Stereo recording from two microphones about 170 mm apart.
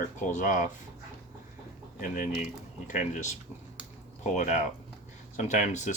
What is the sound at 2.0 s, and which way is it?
Speech, 50° left (ahead or behind).